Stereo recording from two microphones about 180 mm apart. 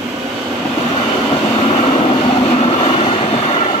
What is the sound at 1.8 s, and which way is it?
Vehicle, 30° left (ahead or behind).